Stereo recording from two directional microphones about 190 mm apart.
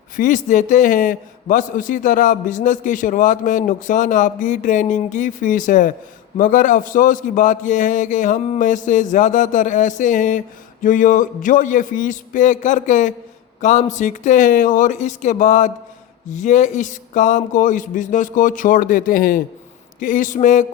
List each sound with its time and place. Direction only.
0.2 s a man's voice: 40° left (ahead or behind)